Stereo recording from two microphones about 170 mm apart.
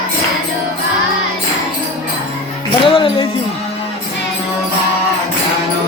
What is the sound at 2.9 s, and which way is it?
Music, 30° left (ahead or behind).